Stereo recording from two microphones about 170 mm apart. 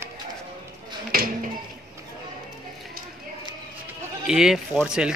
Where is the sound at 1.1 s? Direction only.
60° right (ahead or behind).